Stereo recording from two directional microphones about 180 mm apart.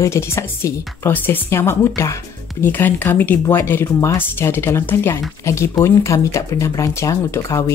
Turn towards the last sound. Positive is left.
turn(degrees=15)  # may be behind; listen again after turning